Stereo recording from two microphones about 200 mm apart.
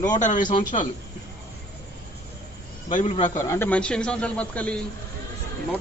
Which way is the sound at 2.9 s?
40° left (ahead or behind).